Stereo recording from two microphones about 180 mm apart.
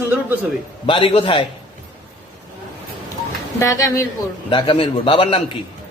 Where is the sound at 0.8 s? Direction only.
30° left (ahead or behind).